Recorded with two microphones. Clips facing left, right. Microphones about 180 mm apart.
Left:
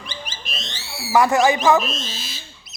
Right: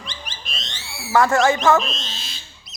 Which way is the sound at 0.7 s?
5° left (ahead or behind).